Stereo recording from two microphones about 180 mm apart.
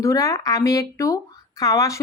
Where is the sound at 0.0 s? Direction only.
20° left (ahead or behind).